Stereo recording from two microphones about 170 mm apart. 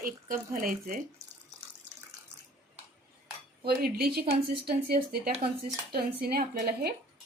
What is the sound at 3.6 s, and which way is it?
A woman's voice, 65° right (ahead or behind).